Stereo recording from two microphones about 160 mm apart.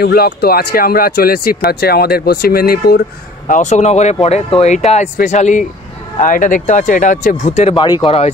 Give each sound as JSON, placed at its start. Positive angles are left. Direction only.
{"t": 0.0, "sound": "speech", "side_deg": 75}
{"t": 3.4, "sound": "speech", "side_deg": 50}
{"t": 7.7, "sound": "speech", "side_deg": 30}